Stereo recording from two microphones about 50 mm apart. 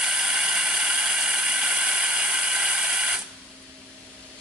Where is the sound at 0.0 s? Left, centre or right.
Centre.